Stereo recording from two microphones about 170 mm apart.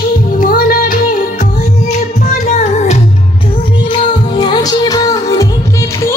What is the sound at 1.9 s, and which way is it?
Music, 45° left (ahead or behind).